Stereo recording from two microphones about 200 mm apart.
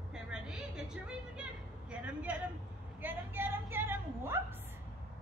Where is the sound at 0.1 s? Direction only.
5° right (ahead or behind).